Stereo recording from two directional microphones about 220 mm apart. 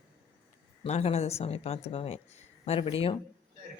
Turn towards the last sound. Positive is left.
turn(degrees=25)  # may be behind; listen again after turning